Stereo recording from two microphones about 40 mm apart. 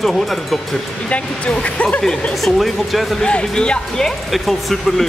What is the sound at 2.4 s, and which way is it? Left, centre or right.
Speech, centre.